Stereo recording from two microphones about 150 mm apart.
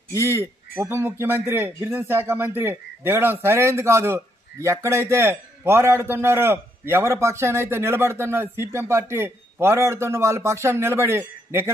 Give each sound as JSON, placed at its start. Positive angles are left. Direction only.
{"t": 0.2, "sound": "a man's voice", "side_deg": -15}